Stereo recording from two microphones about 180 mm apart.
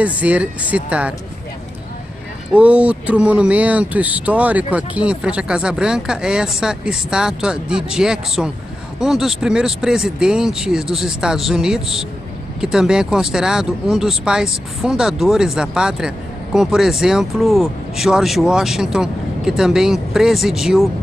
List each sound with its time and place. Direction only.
0.0 s speech: 5° right (ahead or behind)
2.5 s speech: 5° right (ahead or behind)